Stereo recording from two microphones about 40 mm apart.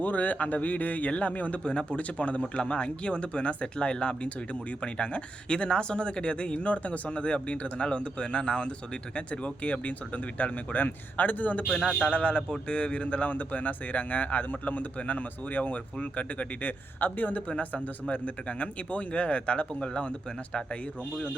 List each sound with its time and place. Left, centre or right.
0.0 s speech: left
12.1 s speech: left
18.1 s speech: left